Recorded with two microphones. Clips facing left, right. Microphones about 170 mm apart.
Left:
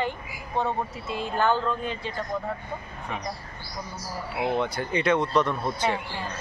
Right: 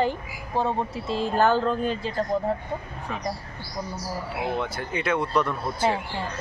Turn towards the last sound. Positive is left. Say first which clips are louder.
# right 1 dB
turn(degrees=-5)  # may be behind; listen again after turning